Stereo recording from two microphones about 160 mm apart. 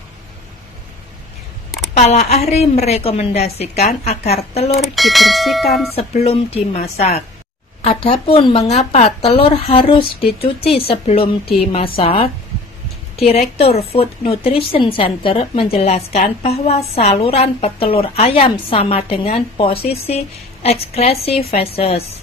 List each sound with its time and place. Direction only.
2.0 s a woman's voice: 45° left (ahead or behind)
4.9 s speech: centre (ahead or behind)
6.2 s a woman's voice: 40° left (ahead or behind)